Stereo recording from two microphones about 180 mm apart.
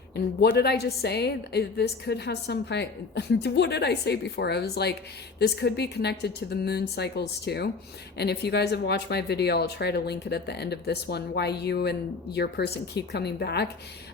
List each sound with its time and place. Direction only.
0.4 s a woman's voice: 65° left (ahead or behind)